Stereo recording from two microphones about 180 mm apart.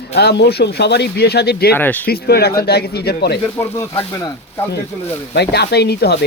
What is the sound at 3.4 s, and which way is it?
Speech, 15° left (ahead or behind).